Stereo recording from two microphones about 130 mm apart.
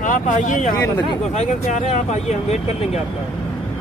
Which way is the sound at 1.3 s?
60° left (ahead or behind).